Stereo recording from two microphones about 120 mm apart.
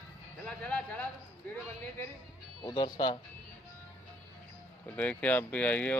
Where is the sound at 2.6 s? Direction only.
35° left (ahead or behind).